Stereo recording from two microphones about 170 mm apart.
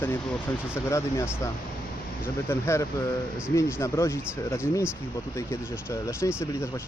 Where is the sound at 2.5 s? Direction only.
15° left (ahead or behind).